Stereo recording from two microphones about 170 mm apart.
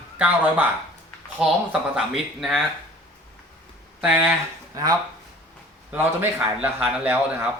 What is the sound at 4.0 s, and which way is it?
Speech, 10° right (ahead or behind).